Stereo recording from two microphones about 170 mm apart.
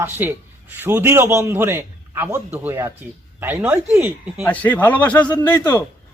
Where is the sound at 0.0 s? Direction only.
10° right (ahead or behind).